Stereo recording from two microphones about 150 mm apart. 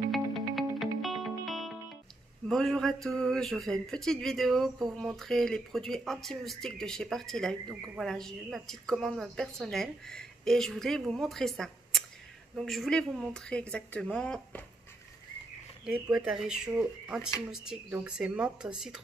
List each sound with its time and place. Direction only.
0.1 s music: centre (ahead or behind)
2.4 s speech: 5° left (ahead or behind)
15.8 s speech: 5° right (ahead or behind)